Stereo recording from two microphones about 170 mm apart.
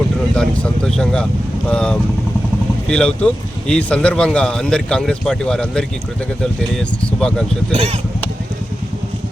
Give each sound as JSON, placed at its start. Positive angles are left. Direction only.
{"t": 0.3, "sound": "speech", "side_deg": 5}
{"t": 7.7, "sound": "speech", "side_deg": -35}